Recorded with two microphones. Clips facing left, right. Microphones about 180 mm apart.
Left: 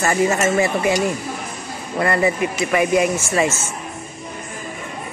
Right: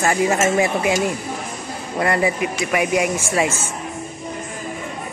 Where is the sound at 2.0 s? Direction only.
10° right (ahead or behind).